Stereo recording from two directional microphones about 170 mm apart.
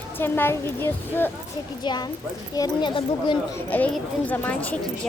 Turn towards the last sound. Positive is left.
turn(degrees=10)  # may be behind; listen again after turning